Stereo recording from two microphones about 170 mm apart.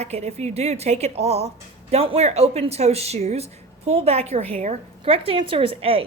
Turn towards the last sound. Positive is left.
turn(degrees=-35)  # may be behind; listen again after turning